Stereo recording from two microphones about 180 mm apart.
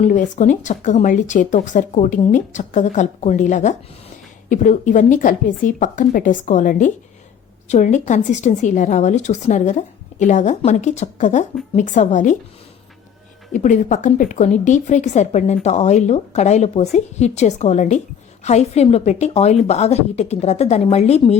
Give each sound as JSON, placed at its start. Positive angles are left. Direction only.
{"t": 0.0, "sound": "a woman's voice", "side_deg": 45}
{"t": 13.5, "sound": "a woman's voice", "side_deg": 45}